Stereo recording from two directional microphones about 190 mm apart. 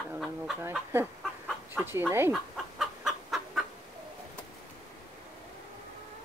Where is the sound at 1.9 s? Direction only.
10° right (ahead or behind).